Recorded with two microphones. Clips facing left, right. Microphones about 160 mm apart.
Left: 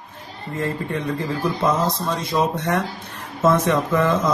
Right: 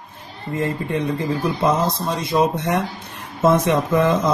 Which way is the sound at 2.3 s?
15° right (ahead or behind).